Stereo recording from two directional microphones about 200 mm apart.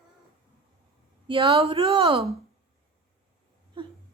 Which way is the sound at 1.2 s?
25° right (ahead or behind).